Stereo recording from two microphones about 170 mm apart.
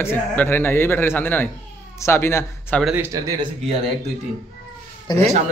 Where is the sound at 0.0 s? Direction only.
15° left (ahead or behind).